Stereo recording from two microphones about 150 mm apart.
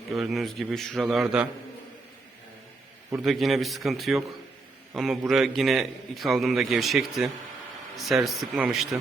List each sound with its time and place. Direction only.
0.2 s a man's voice: centre (ahead or behind)
3.2 s a man's voice: centre (ahead or behind)